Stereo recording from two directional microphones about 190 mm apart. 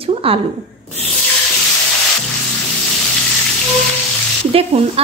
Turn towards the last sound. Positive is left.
turn(degrees=-30)  # may be behind; listen again after turning